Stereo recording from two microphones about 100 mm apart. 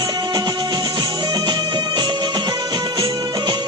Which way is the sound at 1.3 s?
40° right (ahead or behind).